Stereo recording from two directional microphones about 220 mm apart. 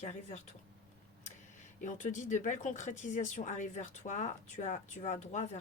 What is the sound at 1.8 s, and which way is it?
Speech, 35° left (ahead or behind).